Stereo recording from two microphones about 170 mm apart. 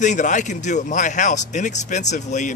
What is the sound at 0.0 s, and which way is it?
Speech, 45° left (ahead or behind).